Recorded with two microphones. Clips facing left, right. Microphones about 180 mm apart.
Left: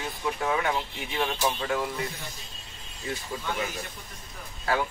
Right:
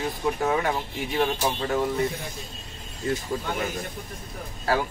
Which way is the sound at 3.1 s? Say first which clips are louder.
Right 5 dB; 45° right (ahead or behind).